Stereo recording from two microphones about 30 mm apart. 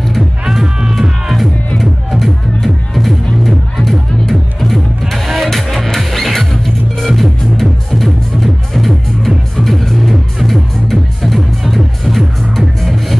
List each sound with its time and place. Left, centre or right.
0.5 s music: centre
1.8 s music: centre